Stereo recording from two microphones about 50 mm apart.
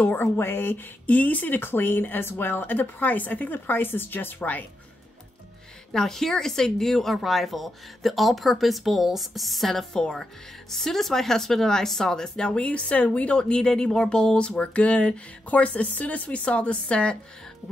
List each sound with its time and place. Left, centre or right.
0.0 s speech: left
1.6 s speech: left
5.9 s speech: centre; by 13.4 s left
13.4 s speech: centre